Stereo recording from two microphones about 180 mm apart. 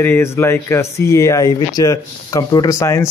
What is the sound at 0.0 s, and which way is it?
Speech, 15° left (ahead or behind).